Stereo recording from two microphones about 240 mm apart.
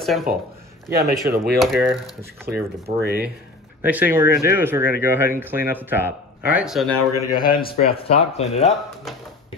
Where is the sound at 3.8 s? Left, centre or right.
Centre.